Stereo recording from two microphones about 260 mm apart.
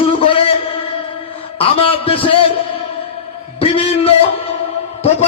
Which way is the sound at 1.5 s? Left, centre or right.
Left.